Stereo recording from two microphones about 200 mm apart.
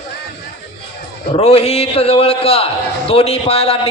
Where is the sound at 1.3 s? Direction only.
30° left (ahead or behind).